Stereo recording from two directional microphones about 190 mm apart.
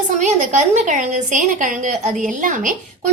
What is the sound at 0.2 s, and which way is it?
A woman's voice, 40° right (ahead or behind).